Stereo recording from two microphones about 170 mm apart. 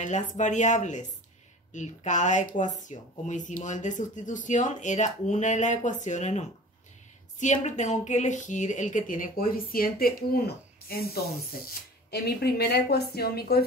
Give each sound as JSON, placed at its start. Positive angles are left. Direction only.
{"t": 0.0, "sound": "speech", "side_deg": 45}
{"t": 12.1, "sound": "a woman's voice", "side_deg": 70}